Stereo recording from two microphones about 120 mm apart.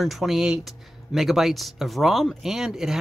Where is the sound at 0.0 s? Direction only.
Centre (ahead or behind).